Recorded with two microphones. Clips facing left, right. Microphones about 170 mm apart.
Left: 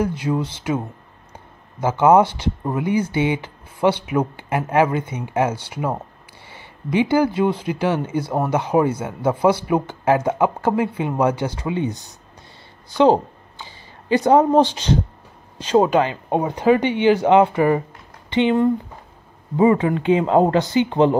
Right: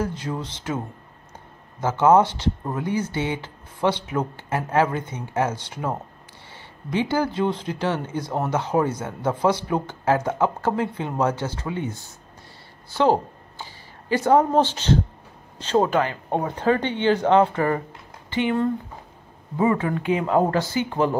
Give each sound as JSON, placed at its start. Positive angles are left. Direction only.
{"t": 0.0, "sound": "speech", "side_deg": 10}